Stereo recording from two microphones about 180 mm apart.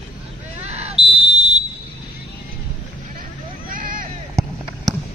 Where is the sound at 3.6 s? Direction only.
50° right (ahead or behind).